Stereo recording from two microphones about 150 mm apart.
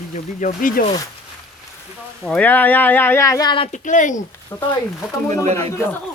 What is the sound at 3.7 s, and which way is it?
Speech, 55° left (ahead or behind).